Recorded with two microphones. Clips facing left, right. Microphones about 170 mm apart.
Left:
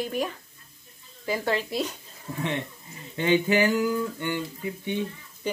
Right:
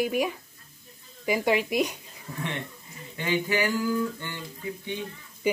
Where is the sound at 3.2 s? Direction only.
25° left (ahead or behind).